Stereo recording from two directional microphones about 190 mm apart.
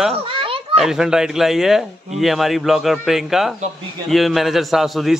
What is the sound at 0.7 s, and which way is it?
Speech, centre (ahead or behind).